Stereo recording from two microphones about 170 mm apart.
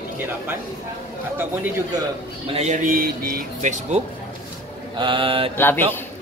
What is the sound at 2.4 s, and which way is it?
Speech, 40° right (ahead or behind).